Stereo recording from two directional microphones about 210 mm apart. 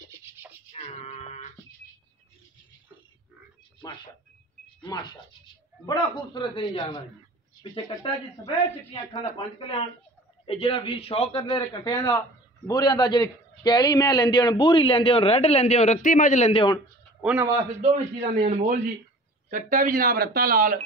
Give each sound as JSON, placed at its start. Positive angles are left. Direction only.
{"t": 0.7, "sound": "a sound", "side_deg": 30}
{"t": 3.8, "sound": "a man's voice", "side_deg": 20}
{"t": 9.1, "sound": "a man's voice", "side_deg": 25}
{"t": 17.2, "sound": "a man's voice", "side_deg": -5}
{"t": 17.8, "sound": "a man's voice", "side_deg": -30}
{"t": 19.5, "sound": "speech", "side_deg": -40}